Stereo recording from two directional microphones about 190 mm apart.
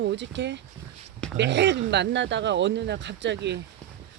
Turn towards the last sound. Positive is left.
turn(degrees=-70)  # may be behind; listen again after turning